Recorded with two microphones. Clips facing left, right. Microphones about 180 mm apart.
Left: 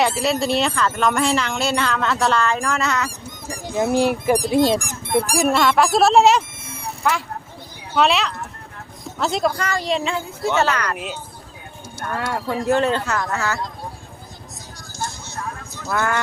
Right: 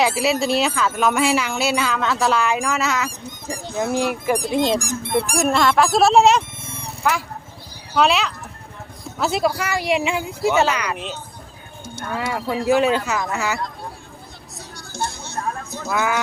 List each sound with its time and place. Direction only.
0.0 s speech: 5° right (ahead or behind)
3.6 s speech: 10° left (ahead or behind)
4.8 s speech: 55° left (ahead or behind)
5.3 s speech: centre (ahead or behind)
10.9 s speech: 5° left (ahead or behind)
12.1 s speech: 5° right (ahead or behind)
14.9 s a sound: 60° right (ahead or behind)
15.9 s speech: 5° right (ahead or behind)